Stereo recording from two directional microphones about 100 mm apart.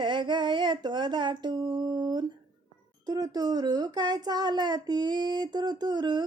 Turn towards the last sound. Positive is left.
turn(degrees=-45)  # may be behind; listen again after turning